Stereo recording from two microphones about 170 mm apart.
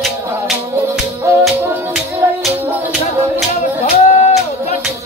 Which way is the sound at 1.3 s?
15° right (ahead or behind).